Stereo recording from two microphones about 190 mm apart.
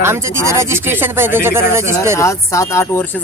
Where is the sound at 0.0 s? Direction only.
15° right (ahead or behind).